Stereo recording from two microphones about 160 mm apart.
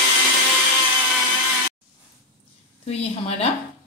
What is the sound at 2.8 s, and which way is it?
Speech, 40° left (ahead or behind).